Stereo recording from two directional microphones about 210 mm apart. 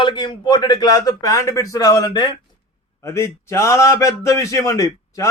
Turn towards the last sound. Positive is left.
turn(degrees=15)  # may be behind; listen again after turning